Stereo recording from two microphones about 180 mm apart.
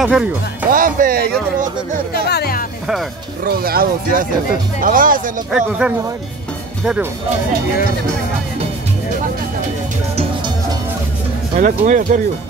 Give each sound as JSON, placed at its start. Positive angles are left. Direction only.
{"t": 0.0, "sound": "speech", "side_deg": -5}
{"t": 0.7, "sound": "speech", "side_deg": -50}
{"t": 2.1, "sound": "speech", "side_deg": 60}
{"t": 3.4, "sound": "speech", "side_deg": -55}
{"t": 5.5, "sound": "speech", "side_deg": -5}
{"t": 10.1, "sound": "music", "side_deg": -25}
{"t": 11.5, "sound": "speech", "side_deg": -40}